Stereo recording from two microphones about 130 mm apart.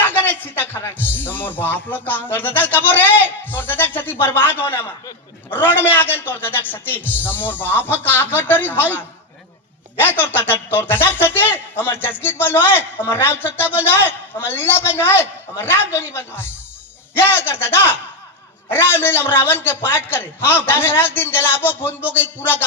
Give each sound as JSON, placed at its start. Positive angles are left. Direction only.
{"t": 0.0, "sound": "speech", "side_deg": 15}
{"t": 13.4, "sound": "speech", "side_deg": -10}
{"t": 13.7, "sound": "speech", "side_deg": 15}
{"t": 18.7, "sound": "speech", "side_deg": 15}